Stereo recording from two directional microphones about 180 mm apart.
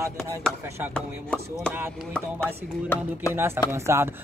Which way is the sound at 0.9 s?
5° left (ahead or behind).